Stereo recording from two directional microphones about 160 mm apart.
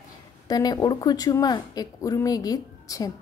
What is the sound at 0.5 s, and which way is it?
A woman's voice, 25° left (ahead or behind).